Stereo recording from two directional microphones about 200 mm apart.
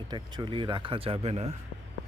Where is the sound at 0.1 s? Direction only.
25° right (ahead or behind).